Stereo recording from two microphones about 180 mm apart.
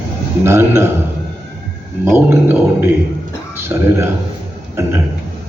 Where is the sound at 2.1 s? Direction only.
10° right (ahead or behind).